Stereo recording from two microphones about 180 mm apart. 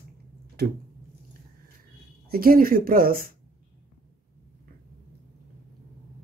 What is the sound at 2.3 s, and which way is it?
Speech, 55° right (ahead or behind).